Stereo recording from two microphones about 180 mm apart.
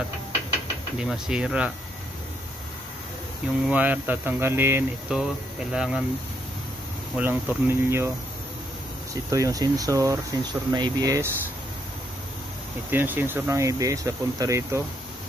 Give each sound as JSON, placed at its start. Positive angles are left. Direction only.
{"t": 0.9, "sound": "speech", "side_deg": -5}
{"t": 3.6, "sound": "speech", "side_deg": -10}
{"t": 7.2, "sound": "speech", "side_deg": -10}
{"t": 9.1, "sound": "speech", "side_deg": -20}
{"t": 12.9, "sound": "speech", "side_deg": -10}